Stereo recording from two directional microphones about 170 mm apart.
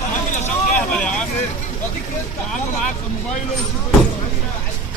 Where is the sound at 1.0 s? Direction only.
5° left (ahead or behind).